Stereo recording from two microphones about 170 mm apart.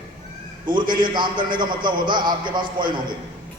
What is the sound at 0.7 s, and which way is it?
A man's voice, 25° right (ahead or behind).